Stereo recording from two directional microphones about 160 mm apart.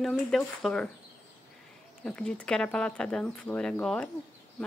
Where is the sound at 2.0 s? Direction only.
5° left (ahead or behind).